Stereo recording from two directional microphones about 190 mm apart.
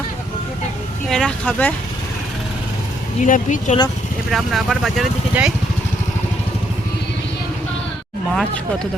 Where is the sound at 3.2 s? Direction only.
40° left (ahead or behind).